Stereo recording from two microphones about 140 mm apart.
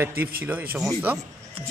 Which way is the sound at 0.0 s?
15° right (ahead or behind).